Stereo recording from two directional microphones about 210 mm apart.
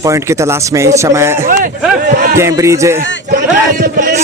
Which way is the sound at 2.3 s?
15° right (ahead or behind).